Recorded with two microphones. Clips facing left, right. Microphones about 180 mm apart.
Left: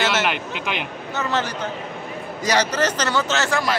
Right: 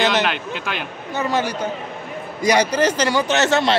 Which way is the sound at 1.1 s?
10° right (ahead or behind).